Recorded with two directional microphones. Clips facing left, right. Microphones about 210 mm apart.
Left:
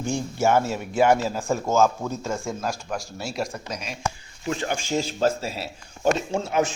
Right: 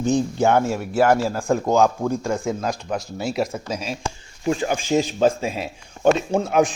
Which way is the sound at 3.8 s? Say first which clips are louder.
Right 2 dB; 30° right (ahead or behind).